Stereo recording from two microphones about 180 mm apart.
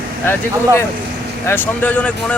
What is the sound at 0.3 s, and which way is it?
Speech, 15° left (ahead or behind).